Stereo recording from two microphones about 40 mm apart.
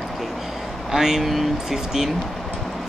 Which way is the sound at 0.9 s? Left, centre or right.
Centre.